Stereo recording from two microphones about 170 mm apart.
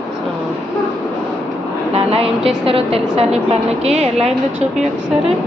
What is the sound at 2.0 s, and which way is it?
A woman's voice, 35° right (ahead or behind).